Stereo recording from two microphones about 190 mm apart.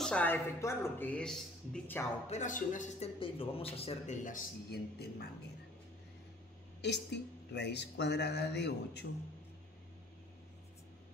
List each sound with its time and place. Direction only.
0.0 s speech: 5° left (ahead or behind)
2.2 s a man's voice: 40° left (ahead or behind)
3.2 s a man's voice: 30° left (ahead or behind); by 5.3 s 55° left (ahead or behind)
6.8 s speech: 65° left (ahead or behind)